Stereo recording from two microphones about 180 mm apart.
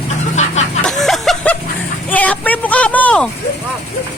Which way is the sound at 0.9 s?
Centre (ahead or behind).